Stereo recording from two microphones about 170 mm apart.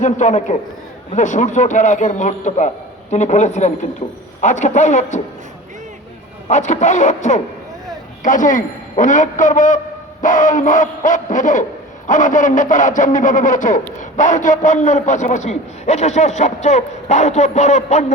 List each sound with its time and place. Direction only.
0.0 s a man's voice: 45° left (ahead or behind)
4.0 s speech: 30° left (ahead or behind)
4.4 s a man's voice: 45° left (ahead or behind)
6.5 s a man's voice: 45° left (ahead or behind)